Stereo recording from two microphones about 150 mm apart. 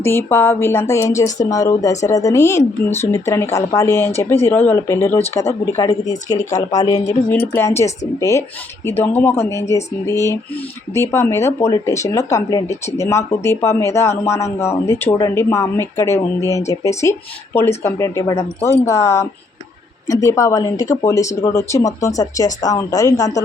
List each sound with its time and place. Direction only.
0.0 s speech: 15° left (ahead or behind)
6.3 s speech: 55° left (ahead or behind)
6.6 s speech: 25° left (ahead or behind)
7.3 s speech: 15° left (ahead or behind)